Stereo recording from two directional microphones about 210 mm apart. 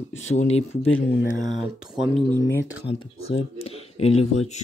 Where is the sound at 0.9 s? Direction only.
65° left (ahead or behind).